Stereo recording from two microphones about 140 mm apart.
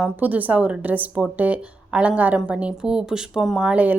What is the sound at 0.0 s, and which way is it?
A woman's voice, 10° right (ahead or behind).